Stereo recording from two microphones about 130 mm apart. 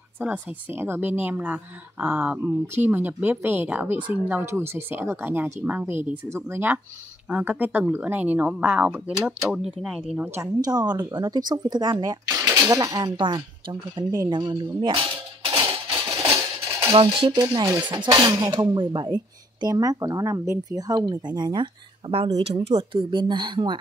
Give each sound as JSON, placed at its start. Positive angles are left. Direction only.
{"t": 0.2, "sound": "speech", "side_deg": -10}
{"t": 9.4, "sound": "speech", "side_deg": -5}
{"t": 10.1, "sound": "speech", "side_deg": -15}
{"t": 10.4, "sound": "speech", "side_deg": -30}
{"t": 14.3, "sound": "a sound", "side_deg": -35}
{"t": 17.4, "sound": "speech", "side_deg": -30}